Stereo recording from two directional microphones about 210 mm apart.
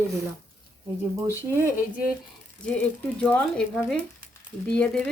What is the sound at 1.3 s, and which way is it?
Speech, 10° right (ahead or behind).